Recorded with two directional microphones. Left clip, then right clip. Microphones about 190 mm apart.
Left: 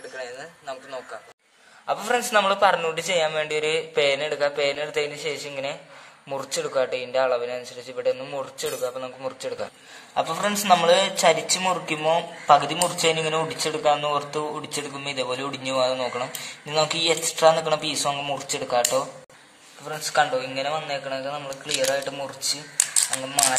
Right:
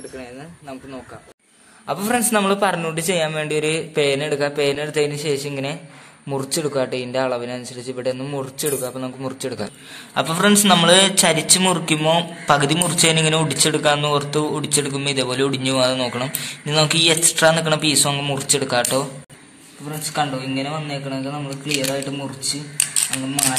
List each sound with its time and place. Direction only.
1.9 s speech: centre (ahead or behind)
19.9 s a man's voice: 20° left (ahead or behind)